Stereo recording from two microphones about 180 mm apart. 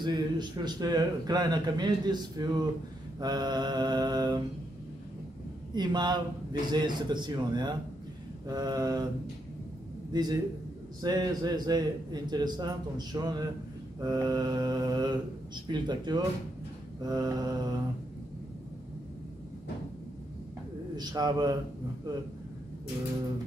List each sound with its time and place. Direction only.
0.0 s a man's voice: 25° right (ahead or behind)
5.8 s a man's voice: 25° right (ahead or behind)
10.1 s a man's voice: 20° right (ahead or behind)
20.9 s a man's voice: 20° right (ahead or behind)